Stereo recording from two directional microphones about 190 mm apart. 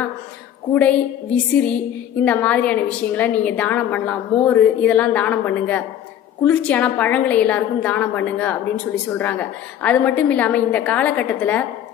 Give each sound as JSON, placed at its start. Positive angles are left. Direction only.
{"t": 0.7, "sound": "a woman's voice", "side_deg": 5}